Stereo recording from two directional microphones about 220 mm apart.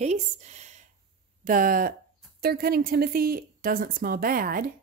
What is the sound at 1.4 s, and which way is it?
Speech, 40° right (ahead or behind).